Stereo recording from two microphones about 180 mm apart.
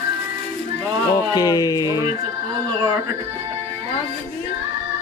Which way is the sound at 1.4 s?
20° left (ahead or behind).